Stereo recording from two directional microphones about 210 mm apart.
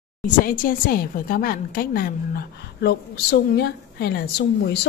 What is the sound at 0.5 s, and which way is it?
A woman's voice, 40° left (ahead or behind).